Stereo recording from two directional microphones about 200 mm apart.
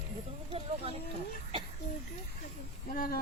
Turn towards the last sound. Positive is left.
turn(degrees=45)  # may be behind; listen again after turning